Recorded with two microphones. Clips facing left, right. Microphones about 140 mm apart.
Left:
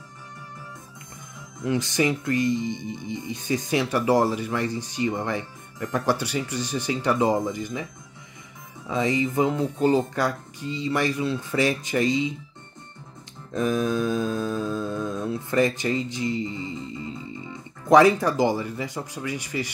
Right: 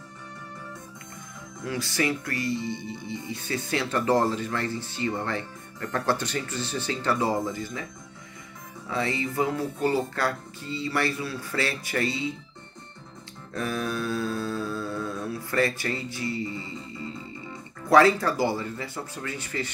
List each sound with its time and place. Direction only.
1.6 s speech: 20° left (ahead or behind)
8.8 s speech: 15° left (ahead or behind)
13.5 s speech: 20° left (ahead or behind)